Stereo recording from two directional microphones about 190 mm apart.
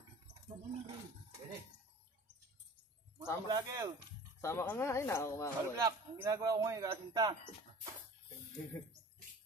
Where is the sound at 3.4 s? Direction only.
20° right (ahead or behind).